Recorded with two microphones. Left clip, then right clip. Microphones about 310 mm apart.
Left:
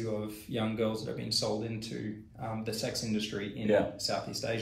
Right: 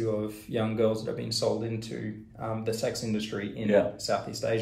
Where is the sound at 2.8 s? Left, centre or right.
Centre.